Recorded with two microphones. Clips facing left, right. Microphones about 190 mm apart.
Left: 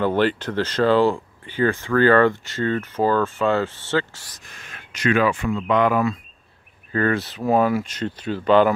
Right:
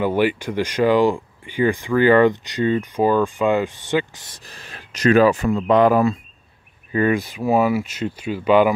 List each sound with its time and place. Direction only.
0.0 s speech: 10° right (ahead or behind)
4.5 s speech: 35° right (ahead or behind)
6.9 s speech: 15° right (ahead or behind)